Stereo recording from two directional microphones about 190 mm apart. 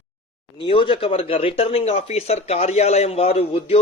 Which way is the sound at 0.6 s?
25° left (ahead or behind).